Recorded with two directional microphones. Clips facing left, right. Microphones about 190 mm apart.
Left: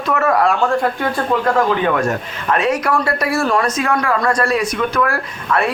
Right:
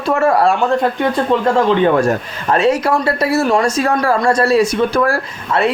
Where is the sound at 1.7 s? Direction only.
30° right (ahead or behind).